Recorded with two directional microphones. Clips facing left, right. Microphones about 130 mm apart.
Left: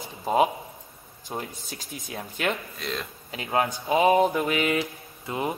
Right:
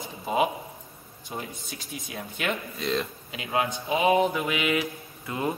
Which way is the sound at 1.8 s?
45° left (ahead or behind).